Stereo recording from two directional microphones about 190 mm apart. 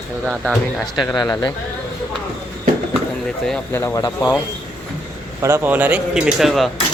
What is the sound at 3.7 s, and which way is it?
Speech, 15° left (ahead or behind).